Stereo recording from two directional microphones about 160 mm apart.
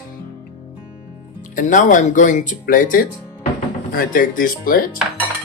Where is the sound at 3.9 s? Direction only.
60° left (ahead or behind).